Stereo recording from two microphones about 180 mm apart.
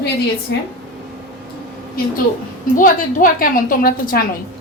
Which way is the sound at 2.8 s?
50° left (ahead or behind).